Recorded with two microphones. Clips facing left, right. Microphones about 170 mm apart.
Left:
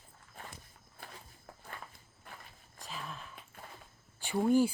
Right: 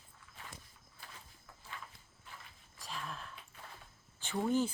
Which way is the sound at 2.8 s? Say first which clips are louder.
Even; centre (ahead or behind).